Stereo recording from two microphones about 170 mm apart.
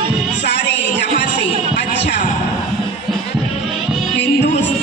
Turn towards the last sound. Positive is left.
turn(degrees=90)